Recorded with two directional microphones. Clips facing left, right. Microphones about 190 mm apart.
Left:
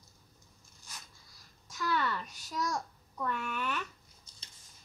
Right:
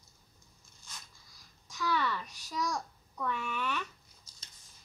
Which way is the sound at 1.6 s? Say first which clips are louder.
Even; 5° left (ahead or behind).